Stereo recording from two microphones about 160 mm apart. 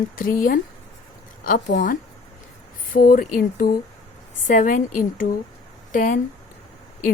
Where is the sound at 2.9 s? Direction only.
60° left (ahead or behind).